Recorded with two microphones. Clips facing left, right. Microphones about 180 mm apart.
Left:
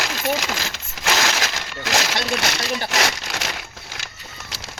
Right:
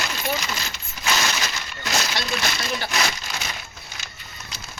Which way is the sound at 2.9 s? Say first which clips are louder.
Left 3 dB; 90° left.